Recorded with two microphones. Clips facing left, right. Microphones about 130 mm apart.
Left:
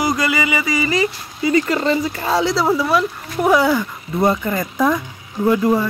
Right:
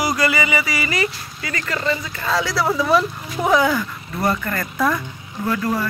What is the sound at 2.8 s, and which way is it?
Speech, 5° left (ahead or behind).